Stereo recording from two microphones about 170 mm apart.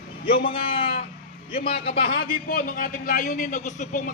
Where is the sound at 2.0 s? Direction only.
65° left (ahead or behind).